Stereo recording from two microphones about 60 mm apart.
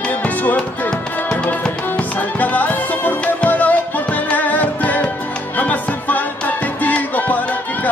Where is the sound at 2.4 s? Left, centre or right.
Left.